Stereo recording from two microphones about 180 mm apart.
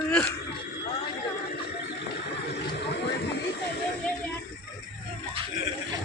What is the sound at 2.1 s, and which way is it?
Neigh, 70° left (ahead or behind).